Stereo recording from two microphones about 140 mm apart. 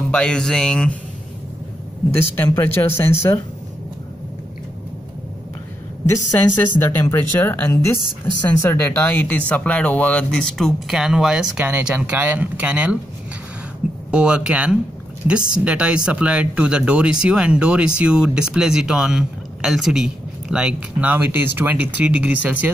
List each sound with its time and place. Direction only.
0.1 s speech: 5° left (ahead or behind)
2.1 s speech: 15° left (ahead or behind)
6.8 s speech: 15° left (ahead or behind); by 12.9 s 10° right (ahead or behind)
14.1 s speech: 5° right (ahead or behind)